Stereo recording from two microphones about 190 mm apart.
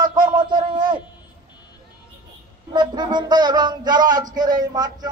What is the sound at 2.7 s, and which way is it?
A man's voice, 20° right (ahead or behind).